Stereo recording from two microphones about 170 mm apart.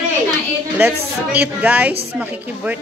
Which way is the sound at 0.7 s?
10° right (ahead or behind).